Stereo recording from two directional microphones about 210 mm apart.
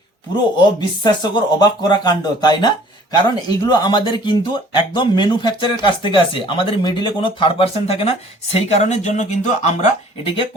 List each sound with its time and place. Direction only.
0.5 s speech: 20° left (ahead or behind)